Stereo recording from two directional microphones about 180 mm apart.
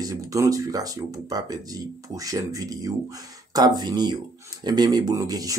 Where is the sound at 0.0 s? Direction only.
20° right (ahead or behind).